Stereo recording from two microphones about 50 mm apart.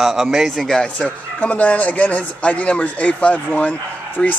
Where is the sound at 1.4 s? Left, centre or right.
Left.